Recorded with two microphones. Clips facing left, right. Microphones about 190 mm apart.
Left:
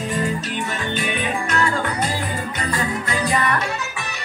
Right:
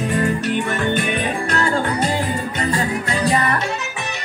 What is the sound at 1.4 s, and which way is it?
Music, 30° right (ahead or behind).